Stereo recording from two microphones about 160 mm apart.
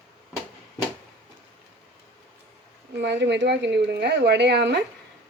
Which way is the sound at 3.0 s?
90° right.